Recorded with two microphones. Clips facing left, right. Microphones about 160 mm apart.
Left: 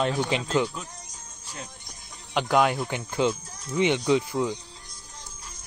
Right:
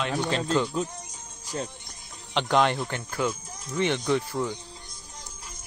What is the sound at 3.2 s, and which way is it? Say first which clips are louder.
Speech: left 4 dB; 25° left (ahead or behind).